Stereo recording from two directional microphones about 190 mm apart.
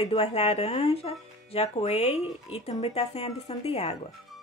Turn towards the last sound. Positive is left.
turn(degrees=35)  # may be behind; listen again after turning